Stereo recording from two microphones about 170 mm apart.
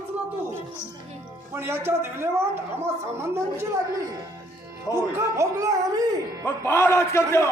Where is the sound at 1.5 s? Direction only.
15° right (ahead or behind).